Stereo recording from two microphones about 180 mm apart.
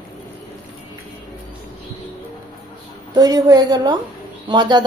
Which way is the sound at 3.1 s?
20° right (ahead or behind).